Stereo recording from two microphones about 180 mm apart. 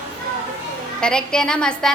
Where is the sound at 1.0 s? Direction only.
5° left (ahead or behind).